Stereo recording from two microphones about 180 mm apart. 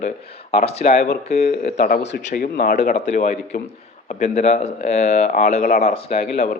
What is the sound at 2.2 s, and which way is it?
Speech, 55° left (ahead or behind).